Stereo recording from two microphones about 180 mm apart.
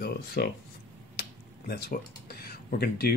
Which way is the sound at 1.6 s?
60° left (ahead or behind).